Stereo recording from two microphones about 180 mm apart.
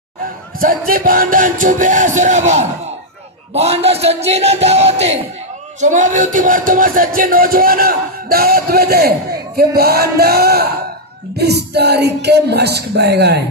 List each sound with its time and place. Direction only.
0.6 s a sound: 50° right (ahead or behind)
3.5 s speech: 35° right (ahead or behind)
5.8 s music: 45° right (ahead or behind); by 13.4 s 65° right (ahead or behind)